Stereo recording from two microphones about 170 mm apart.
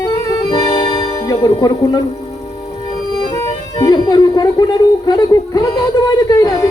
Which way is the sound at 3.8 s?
25° left (ahead or behind).